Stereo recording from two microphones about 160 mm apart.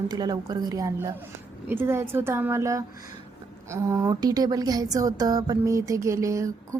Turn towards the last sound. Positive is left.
turn(degrees=-20)  # may be behind; listen again after turning